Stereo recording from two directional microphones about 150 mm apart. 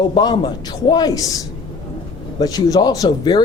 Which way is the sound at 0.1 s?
30° left (ahead or behind).